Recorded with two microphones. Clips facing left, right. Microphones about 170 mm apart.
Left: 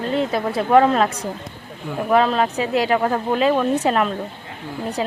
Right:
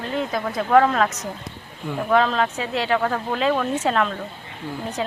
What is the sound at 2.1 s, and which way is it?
Speech, 5° left (ahead or behind).